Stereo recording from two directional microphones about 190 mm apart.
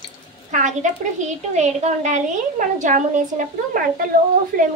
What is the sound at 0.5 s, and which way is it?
A woman's voice, 40° right (ahead or behind).